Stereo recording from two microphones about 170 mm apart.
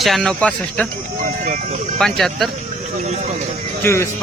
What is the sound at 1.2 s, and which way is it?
Speech, 50° right (ahead or behind).